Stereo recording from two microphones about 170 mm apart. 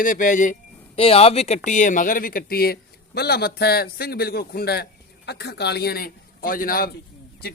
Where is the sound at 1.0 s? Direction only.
35° left (ahead or behind); by 4.8 s 65° left (ahead or behind).